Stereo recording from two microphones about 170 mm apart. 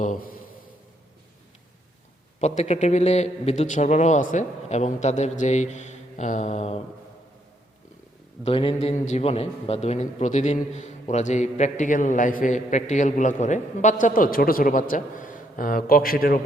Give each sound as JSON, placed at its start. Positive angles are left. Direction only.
{"t": 0.0, "sound": "a sound", "side_deg": 55}
{"t": 2.4, "sound": "a man's voice", "side_deg": 40}
{"t": 8.4, "sound": "a man's voice", "side_deg": 35}